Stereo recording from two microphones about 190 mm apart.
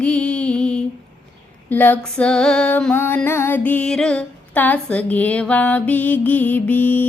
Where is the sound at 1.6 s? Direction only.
10° left (ahead or behind).